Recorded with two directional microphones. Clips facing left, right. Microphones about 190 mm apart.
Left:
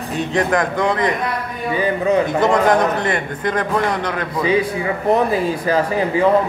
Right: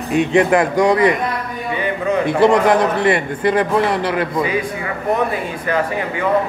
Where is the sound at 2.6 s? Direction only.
5° right (ahead or behind).